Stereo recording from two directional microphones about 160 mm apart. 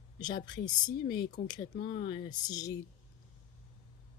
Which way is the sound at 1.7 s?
70° left (ahead or behind).